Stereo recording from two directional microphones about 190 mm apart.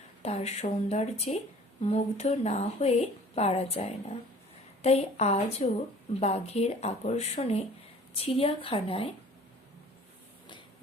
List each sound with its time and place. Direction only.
0.2 s a woman's voice: 35° left (ahead or behind)